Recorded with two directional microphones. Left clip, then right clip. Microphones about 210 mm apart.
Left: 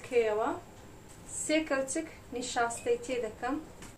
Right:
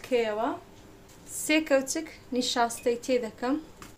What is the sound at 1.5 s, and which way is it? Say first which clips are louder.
A woman's voice: right 5 dB; 55° right (ahead or behind).